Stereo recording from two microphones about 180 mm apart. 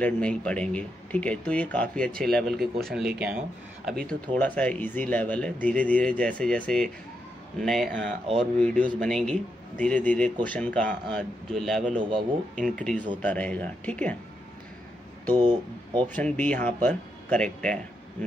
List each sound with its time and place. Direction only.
0.0 s a man's voice: 5° left (ahead or behind)
4.1 s a man's voice: 10° left (ahead or behind)
12.0 s speech: 25° right (ahead or behind)
12.7 s speech: 5° left (ahead or behind)
15.3 s speech: 25° right (ahead or behind)
16.1 s speech: 10° left (ahead or behind)